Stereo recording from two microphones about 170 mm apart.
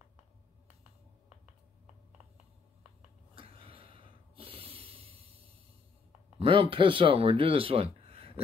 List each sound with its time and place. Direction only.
3.3 s snort: 30° right (ahead or behind)
6.4 s speech: 30° right (ahead or behind)